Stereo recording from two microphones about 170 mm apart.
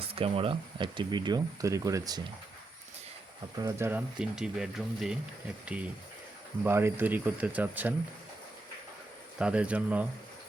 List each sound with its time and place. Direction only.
0.0 s speech: 35° right (ahead or behind)
3.6 s speech: 20° right (ahead or behind)
6.7 s speech: 15° right (ahead or behind)
9.4 s speech: 5° right (ahead or behind)